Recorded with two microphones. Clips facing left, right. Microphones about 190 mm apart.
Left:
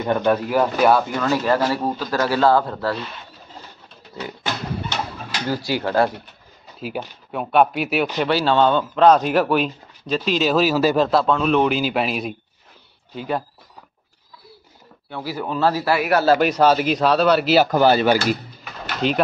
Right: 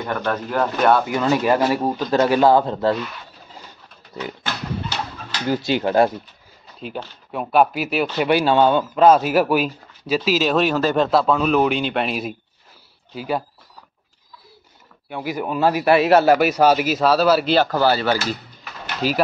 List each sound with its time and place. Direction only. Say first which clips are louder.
0.0 s speech: left 5 dB; 20° left (ahead or behind)
1.0 s speech: right 2 dB; 15° right (ahead or behind)
5.5 s speech: right 3 dB; 20° right (ahead or behind)
6.8 s speech: left 2 dB; 5° left (ahead or behind)
8.2 s speech: right 2 dB; 15° right (ahead or behind)
15.0 s speech: right 2 dB; 15° right (ahead or behind)
16.3 s speech: even; 10° right (ahead or behind)
17.6 s speech: left 3 dB; 15° left (ahead or behind)
18.6 s pigeon: left 1 dB; 5° right (ahead or behind)